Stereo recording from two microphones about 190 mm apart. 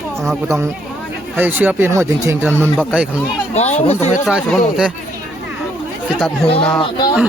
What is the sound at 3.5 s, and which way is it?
Speech, 35° left (ahead or behind).